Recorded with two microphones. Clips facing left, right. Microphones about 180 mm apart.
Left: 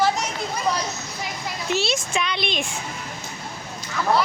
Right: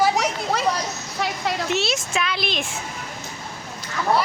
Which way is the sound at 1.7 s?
Centre (ahead or behind).